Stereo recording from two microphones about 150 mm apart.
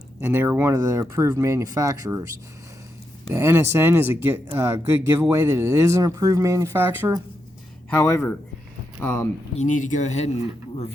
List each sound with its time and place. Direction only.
0.2 s speech: 15° right (ahead or behind)
3.2 s speech: 15° right (ahead or behind)
7.9 s speech: 15° left (ahead or behind)
9.6 s speech: 55° left (ahead or behind)